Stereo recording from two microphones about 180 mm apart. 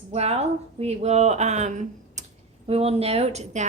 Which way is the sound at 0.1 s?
35° right (ahead or behind).